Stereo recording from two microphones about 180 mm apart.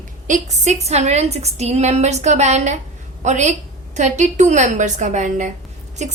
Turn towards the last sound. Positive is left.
turn(degrees=-40)  # may be behind; listen again after turning